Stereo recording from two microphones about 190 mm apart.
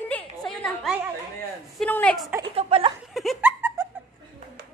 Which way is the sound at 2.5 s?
30° right (ahead or behind).